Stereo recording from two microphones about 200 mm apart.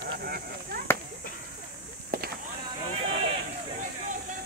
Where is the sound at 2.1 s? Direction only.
50° right (ahead or behind).